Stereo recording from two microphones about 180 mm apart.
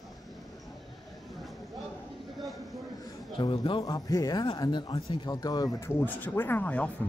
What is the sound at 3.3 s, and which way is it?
Speech, 30° left (ahead or behind).